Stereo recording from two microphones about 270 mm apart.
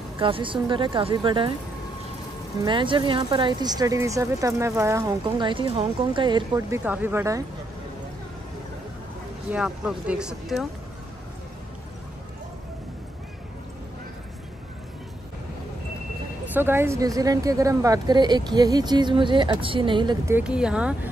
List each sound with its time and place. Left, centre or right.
0.2 s speech: centre
2.6 s speech: centre
9.5 s speech: centre
16.5 s speech: centre